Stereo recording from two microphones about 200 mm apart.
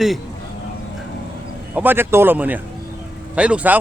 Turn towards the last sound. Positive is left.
turn(degrees=-5)  # may be behind; listen again after turning